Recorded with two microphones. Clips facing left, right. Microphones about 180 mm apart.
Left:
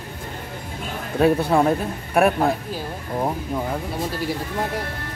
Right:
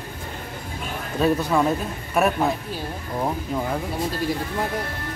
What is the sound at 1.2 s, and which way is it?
Speech, 25° left (ahead or behind).